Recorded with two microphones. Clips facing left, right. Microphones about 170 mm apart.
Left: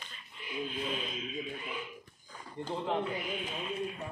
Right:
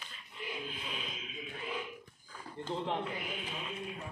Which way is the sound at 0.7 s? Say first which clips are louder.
Left 7 dB; 5° right (ahead or behind).